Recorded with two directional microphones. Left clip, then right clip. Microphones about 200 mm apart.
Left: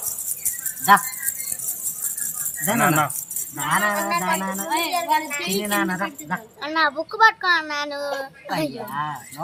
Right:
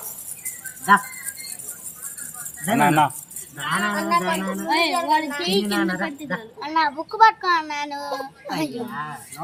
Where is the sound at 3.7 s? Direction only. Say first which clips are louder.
Left 1 dB; 55° left (ahead or behind).